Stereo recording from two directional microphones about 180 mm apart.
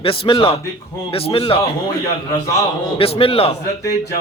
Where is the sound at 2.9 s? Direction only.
30° left (ahead or behind).